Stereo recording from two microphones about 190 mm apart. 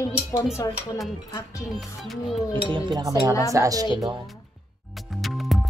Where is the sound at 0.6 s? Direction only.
20° left (ahead or behind).